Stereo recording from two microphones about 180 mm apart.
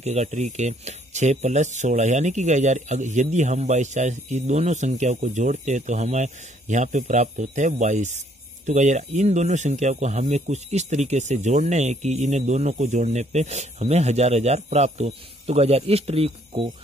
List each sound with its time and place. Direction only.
0.0 s speech: 40° right (ahead or behind)